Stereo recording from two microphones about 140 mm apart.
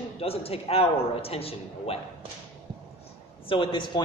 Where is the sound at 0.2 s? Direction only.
45° left (ahead or behind).